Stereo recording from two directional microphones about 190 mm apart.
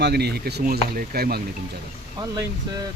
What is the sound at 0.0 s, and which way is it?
Speech, 60° right (ahead or behind).